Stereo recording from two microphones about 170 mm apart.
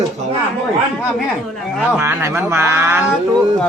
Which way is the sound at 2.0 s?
15° right (ahead or behind).